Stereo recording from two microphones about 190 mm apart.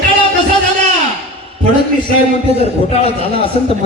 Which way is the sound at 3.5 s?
35° left (ahead or behind).